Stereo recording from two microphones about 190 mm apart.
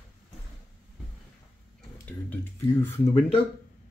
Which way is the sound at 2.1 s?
10° left (ahead or behind).